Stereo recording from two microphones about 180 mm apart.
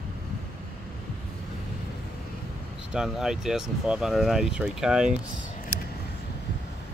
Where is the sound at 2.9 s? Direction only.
Centre (ahead or behind).